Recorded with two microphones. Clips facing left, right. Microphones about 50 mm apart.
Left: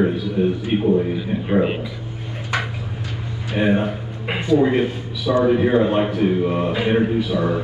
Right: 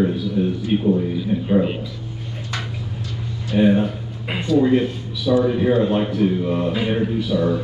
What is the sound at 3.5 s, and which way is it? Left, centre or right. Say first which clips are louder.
A man's voice: right 2 dB; left.